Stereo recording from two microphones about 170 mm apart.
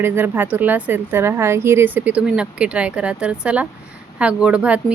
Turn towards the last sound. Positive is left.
turn(degrees=-5)  # may be behind; listen again after turning